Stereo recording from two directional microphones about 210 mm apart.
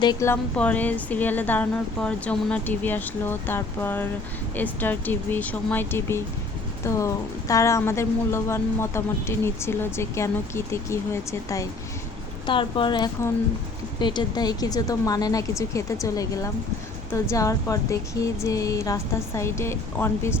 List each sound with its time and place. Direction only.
0.0 s a woman's voice: 15° left (ahead or behind)